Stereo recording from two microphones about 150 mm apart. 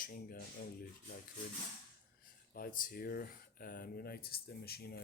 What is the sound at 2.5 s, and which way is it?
Speech, 70° left (ahead or behind).